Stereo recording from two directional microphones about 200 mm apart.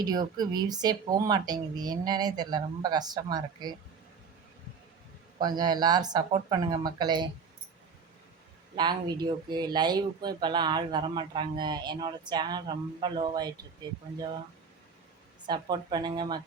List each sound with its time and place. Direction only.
0.0 s speech: 20° right (ahead or behind)
5.4 s speech: 20° right (ahead or behind)
8.7 s speech: 20° right (ahead or behind)
15.4 s speech: 20° right (ahead or behind)